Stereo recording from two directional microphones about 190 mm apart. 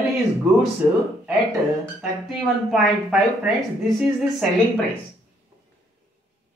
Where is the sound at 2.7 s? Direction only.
Centre (ahead or behind).